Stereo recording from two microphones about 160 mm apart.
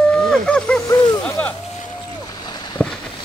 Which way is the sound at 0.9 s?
25° left (ahead or behind).